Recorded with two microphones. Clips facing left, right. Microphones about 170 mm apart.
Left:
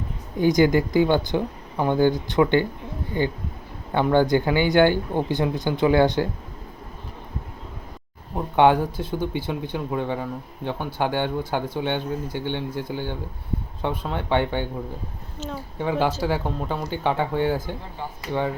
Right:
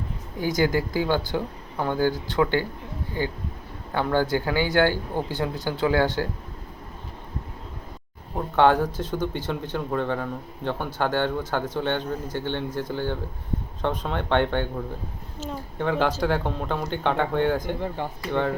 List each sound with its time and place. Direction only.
0.3 s speech: 20° left (ahead or behind)
3.9 s speech: 20° left (ahead or behind)
8.5 s speech: 15° left (ahead or behind)